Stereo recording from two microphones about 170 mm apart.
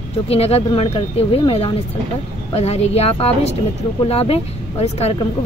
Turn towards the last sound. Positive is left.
turn(degrees=35)  # may be behind; listen again after turning